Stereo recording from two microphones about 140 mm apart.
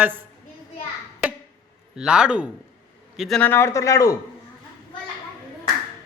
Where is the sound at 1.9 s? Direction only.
5° right (ahead or behind).